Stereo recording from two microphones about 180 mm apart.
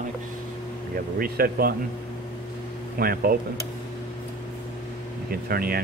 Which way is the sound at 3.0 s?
55° right (ahead or behind).